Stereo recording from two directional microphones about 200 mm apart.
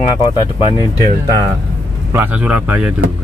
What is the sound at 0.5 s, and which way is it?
Speech, 25° left (ahead or behind).